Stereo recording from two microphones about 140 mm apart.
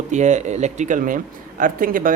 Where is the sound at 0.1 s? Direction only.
60° right (ahead or behind).